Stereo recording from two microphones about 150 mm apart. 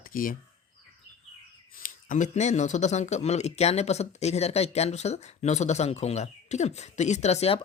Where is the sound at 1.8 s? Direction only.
60° left (ahead or behind).